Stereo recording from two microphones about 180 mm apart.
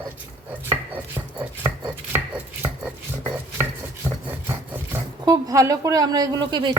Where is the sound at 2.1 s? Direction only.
10° right (ahead or behind).